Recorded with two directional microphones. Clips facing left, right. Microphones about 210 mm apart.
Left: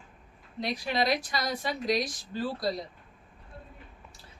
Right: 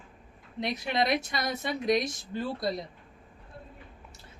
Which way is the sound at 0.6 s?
20° right (ahead or behind).